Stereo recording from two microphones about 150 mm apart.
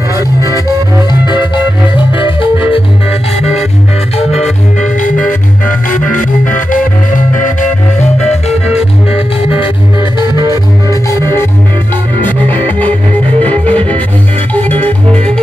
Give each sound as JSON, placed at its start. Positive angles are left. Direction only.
{"t": 1.2, "sound": "music", "side_deg": 30}
{"t": 7.3, "sound": "music", "side_deg": 60}
{"t": 10.5, "sound": "music", "side_deg": 20}
{"t": 12.5, "sound": "music", "side_deg": 10}